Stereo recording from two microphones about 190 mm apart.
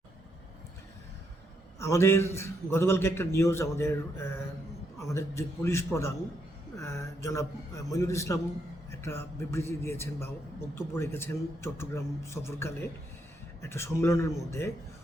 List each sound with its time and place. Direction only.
1.8 s a man's voice: 15° left (ahead or behind)